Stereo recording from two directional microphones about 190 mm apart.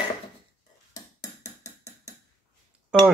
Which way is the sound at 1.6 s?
15° left (ahead or behind).